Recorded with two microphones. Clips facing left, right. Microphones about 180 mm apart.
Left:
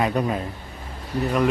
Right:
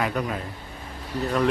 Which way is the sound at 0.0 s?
25° left (ahead or behind).